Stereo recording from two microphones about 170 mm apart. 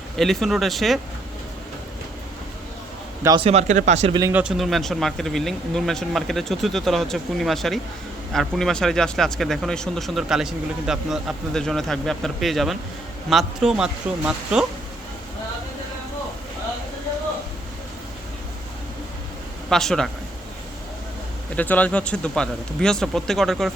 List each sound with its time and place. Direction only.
0.2 s speech: centre (ahead or behind)
3.4 s speech: 40° right (ahead or behind)
4.3 s speech: 5° right (ahead or behind)
19.7 s speech: 5° left (ahead or behind)
21.5 s speech: 10° left (ahead or behind)